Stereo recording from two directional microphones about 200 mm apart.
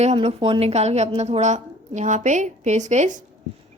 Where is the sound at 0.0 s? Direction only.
30° right (ahead or behind).